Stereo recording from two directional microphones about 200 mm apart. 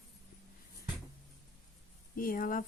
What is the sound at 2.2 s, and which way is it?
Speech, 45° left (ahead or behind).